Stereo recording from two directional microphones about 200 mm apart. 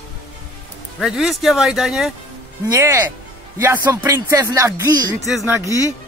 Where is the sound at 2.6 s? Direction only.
15° right (ahead or behind).